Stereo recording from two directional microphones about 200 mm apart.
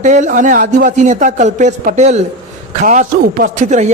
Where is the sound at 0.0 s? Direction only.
35° right (ahead or behind).